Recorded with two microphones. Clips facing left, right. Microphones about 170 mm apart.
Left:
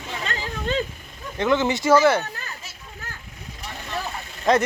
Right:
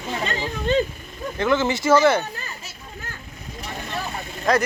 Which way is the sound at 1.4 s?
15° left (ahead or behind).